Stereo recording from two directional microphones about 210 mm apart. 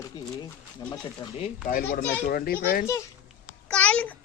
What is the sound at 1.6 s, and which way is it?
Speech, 45° left (ahead or behind).